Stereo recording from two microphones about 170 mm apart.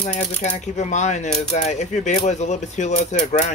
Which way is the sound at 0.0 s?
40° left (ahead or behind).